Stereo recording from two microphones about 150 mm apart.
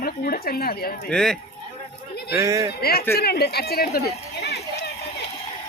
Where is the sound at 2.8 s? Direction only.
90° left.